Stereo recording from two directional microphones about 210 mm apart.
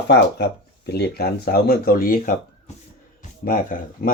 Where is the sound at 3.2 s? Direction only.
40° left (ahead or behind).